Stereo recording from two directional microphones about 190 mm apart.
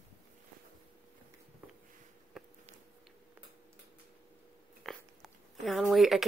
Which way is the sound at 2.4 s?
Centre (ahead or behind).